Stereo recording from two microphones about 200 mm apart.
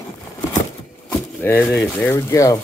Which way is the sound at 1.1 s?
10° left (ahead or behind).